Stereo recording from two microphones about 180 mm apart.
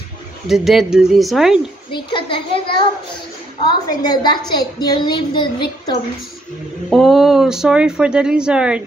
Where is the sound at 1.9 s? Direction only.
25° left (ahead or behind).